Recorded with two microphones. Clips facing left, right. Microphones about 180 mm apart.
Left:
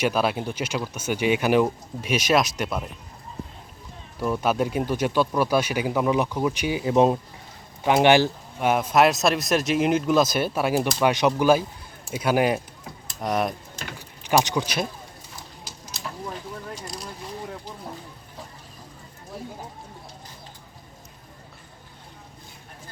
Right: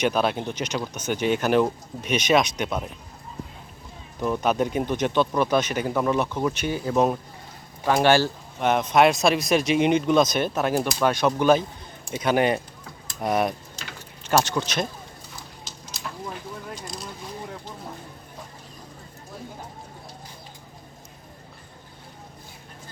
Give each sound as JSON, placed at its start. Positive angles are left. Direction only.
{"t": 0.0, "sound": "speech", "side_deg": 5}
{"t": 4.2, "sound": "speech", "side_deg": 5}
{"t": 6.9, "sound": "speech", "side_deg": 25}
{"t": 11.0, "sound": "speech", "side_deg": 15}
{"t": 14.3, "sound": "speech", "side_deg": 10}
{"t": 16.7, "sound": "a sound", "side_deg": 10}